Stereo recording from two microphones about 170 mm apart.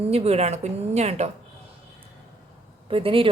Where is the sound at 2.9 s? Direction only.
30° right (ahead or behind).